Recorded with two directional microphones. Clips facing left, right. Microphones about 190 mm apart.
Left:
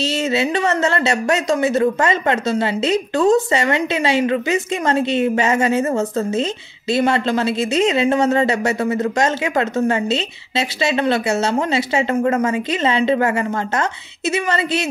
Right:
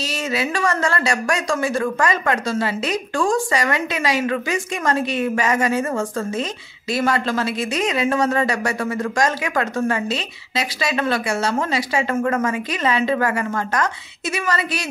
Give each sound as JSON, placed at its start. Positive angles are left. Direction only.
{"t": 0.0, "sound": "speech", "side_deg": 25}